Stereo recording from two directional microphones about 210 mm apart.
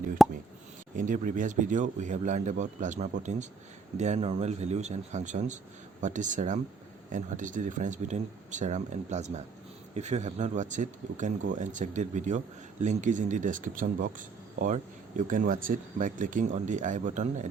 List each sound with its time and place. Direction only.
0.2 s plop: centre (ahead or behind)
0.9 s speech: 40° right (ahead or behind)